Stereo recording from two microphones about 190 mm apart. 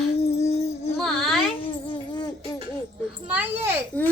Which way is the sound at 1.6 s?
25° left (ahead or behind).